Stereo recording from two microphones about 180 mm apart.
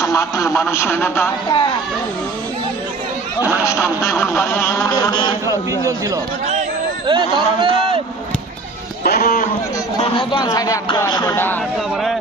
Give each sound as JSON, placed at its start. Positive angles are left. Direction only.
{"t": 0.0, "sound": "a man's voice", "side_deg": 15}
{"t": 3.6, "sound": "a man's voice", "side_deg": 15}
{"t": 7.1, "sound": "speech", "side_deg": -25}
{"t": 9.0, "sound": "speech", "side_deg": 55}
{"t": 10.0, "sound": "speech", "side_deg": 25}